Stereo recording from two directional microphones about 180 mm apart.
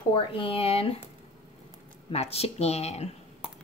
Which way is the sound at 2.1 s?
35° left (ahead or behind).